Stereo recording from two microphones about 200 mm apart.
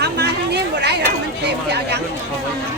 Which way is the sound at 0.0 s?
55° right (ahead or behind).